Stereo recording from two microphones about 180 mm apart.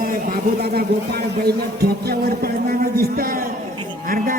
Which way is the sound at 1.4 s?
60° right (ahead or behind).